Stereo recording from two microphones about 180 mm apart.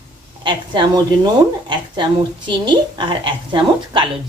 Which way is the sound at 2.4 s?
25° right (ahead or behind).